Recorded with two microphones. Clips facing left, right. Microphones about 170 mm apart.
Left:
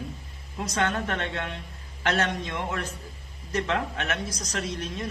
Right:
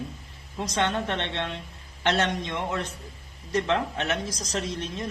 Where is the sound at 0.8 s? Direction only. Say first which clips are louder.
Right 1 dB; 25° right (ahead or behind).